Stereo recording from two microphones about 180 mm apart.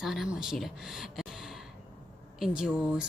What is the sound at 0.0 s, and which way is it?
A woman's voice, centre (ahead or behind).